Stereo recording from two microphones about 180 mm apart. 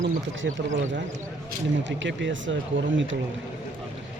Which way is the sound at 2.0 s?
85° right.